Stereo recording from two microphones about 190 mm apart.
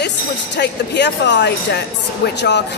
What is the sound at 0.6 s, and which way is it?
Speech, 65° left (ahead or behind).